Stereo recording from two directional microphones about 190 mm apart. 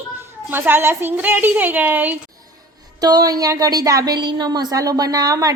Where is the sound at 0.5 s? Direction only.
10° right (ahead or behind).